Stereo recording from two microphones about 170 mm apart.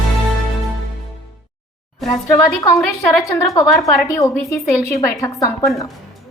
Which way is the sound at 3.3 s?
20° left (ahead or behind).